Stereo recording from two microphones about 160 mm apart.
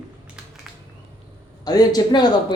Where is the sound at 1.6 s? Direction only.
25° left (ahead or behind).